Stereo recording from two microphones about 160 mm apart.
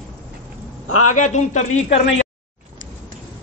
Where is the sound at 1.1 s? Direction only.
50° left (ahead or behind).